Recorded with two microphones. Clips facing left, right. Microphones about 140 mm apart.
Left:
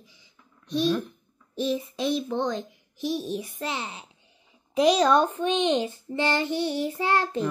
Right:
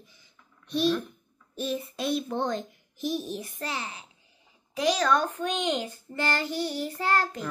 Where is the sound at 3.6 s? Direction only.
20° left (ahead or behind).